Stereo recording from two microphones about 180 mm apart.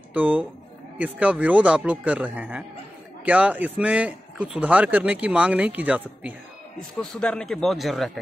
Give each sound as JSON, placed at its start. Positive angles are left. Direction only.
{"t": 0.1, "sound": "a man's voice", "side_deg": -10}
{"t": 7.0, "sound": "speech", "side_deg": 5}